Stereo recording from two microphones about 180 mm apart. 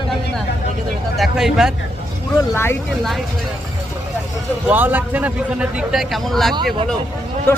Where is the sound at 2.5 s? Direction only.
15° left (ahead or behind).